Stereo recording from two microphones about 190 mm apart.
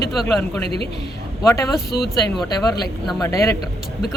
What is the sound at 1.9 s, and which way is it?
Speech, 55° left (ahead or behind).